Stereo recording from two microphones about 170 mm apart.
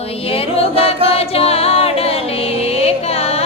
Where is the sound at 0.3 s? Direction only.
35° left (ahead or behind).